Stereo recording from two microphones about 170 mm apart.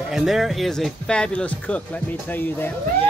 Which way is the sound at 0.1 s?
Centre (ahead or behind).